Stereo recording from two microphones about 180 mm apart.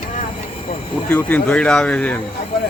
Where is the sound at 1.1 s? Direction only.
10° left (ahead or behind).